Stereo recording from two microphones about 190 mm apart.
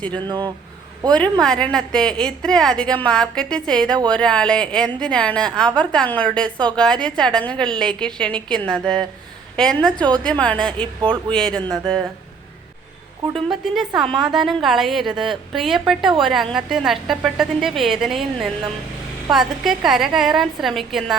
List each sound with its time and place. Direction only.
0.3 s speech: 25° right (ahead or behind)
1.1 s a woman's voice: 5° left (ahead or behind)
13.3 s a woman's voice: centre (ahead or behind)